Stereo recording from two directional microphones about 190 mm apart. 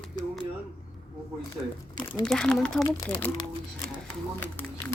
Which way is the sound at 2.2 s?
5° left (ahead or behind).